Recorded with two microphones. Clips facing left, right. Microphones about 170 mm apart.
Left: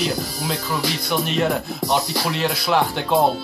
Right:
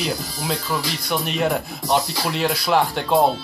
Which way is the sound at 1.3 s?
Centre (ahead or behind).